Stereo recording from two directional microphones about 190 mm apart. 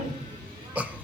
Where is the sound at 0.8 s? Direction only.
10° right (ahead or behind).